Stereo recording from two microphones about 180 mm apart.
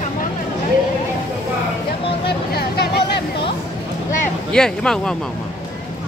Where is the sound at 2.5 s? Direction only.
60° left (ahead or behind).